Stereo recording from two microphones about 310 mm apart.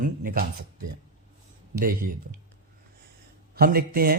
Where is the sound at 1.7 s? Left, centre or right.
Right.